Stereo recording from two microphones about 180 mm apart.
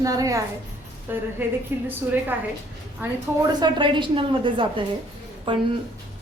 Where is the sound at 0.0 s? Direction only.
20° right (ahead or behind).